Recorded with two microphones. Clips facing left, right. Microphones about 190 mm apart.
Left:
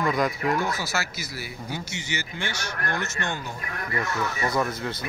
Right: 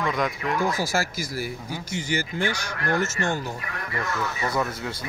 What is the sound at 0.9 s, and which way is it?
Speech, 45° right (ahead or behind).